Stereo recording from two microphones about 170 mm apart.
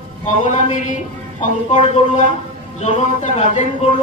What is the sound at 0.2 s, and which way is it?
A man's voice, 45° left (ahead or behind).